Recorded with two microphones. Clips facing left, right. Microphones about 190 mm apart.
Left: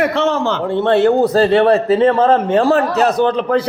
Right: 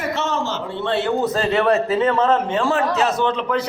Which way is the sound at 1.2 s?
35° left (ahead or behind).